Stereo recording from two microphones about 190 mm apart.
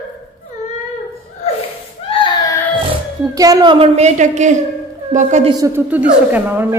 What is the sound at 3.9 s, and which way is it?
A woman's voice, 40° right (ahead or behind).